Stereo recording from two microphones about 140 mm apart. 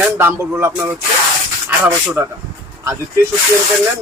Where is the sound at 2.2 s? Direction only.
20° right (ahead or behind).